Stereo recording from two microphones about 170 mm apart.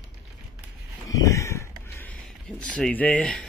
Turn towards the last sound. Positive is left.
turn(degrees=5)  # may be behind; listen again after turning